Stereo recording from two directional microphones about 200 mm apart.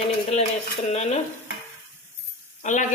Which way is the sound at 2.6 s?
40° left (ahead or behind).